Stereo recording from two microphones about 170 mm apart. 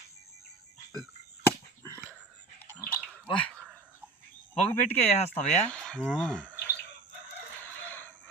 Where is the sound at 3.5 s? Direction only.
5° left (ahead or behind).